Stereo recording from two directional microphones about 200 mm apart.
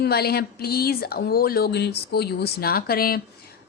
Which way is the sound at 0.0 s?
50° left (ahead or behind).